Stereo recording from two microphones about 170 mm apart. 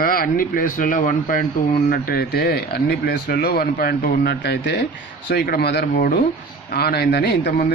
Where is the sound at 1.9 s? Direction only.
60° left (ahead or behind).